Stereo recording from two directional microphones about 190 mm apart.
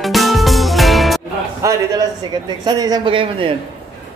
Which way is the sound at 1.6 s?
20° right (ahead or behind).